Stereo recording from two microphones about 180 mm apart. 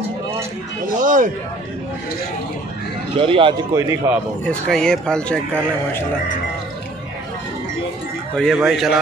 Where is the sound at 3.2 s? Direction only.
30° right (ahead or behind).